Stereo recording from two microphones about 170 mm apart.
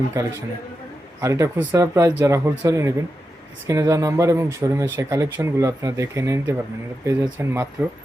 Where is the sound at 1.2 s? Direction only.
15° right (ahead or behind).